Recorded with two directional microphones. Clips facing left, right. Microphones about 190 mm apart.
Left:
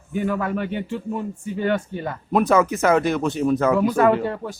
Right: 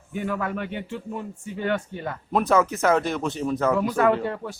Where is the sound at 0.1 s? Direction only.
35° left (ahead or behind).